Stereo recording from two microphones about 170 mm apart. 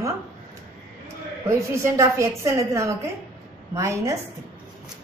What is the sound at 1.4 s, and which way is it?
A woman's voice, 15° right (ahead or behind).